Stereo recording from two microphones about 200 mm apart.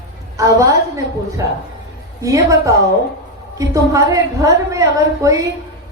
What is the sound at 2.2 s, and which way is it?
A woman's voice, 15° right (ahead or behind).